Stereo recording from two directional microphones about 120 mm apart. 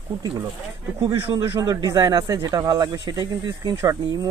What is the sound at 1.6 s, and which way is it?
Speech, 30° right (ahead or behind).